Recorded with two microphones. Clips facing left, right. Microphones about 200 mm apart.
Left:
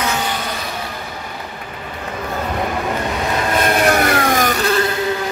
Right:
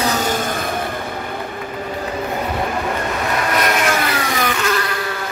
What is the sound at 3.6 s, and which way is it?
Insect, 30° left (ahead or behind).